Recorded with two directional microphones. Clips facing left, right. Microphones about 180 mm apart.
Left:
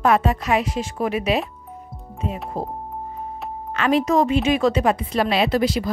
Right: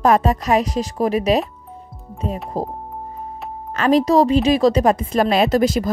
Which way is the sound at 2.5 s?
35° right (ahead or behind).